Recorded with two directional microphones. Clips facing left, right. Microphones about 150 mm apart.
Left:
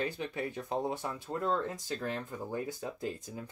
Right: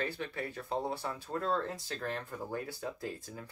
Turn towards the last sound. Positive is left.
turn(degrees=20)  # may be behind; listen again after turning